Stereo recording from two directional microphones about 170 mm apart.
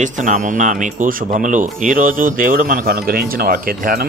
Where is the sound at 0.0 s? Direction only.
50° right (ahead or behind).